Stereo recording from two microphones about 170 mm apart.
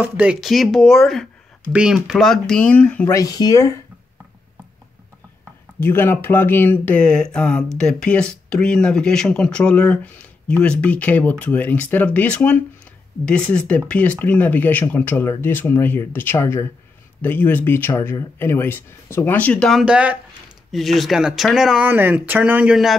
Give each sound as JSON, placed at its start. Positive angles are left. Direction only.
{"t": 0.0, "sound": "speech", "side_deg": -5}
{"t": 3.2, "sound": "speech", "side_deg": 20}
{"t": 5.8, "sound": "speech", "side_deg": 15}
{"t": 19.8, "sound": "speech", "side_deg": -5}